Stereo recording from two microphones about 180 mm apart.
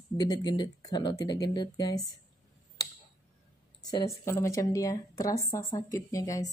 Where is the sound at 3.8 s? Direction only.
20° left (ahead or behind).